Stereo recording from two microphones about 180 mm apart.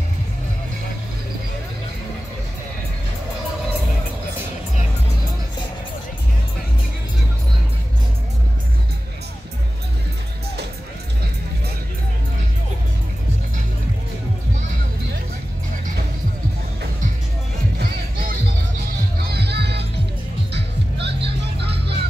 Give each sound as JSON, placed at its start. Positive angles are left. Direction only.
{"t": 17.7, "sound": "music", "side_deg": -55}
{"t": 19.3, "sound": "music", "side_deg": -65}